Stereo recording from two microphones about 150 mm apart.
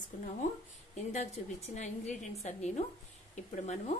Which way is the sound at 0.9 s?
50° left (ahead or behind).